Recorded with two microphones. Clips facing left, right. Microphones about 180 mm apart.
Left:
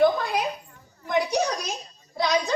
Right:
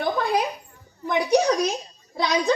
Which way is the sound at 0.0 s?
60° right (ahead or behind).